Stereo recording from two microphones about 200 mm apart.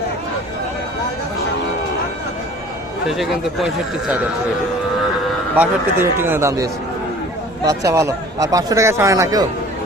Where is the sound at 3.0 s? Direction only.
Centre (ahead or behind).